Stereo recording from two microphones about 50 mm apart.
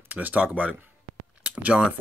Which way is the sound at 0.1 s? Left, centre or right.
Right.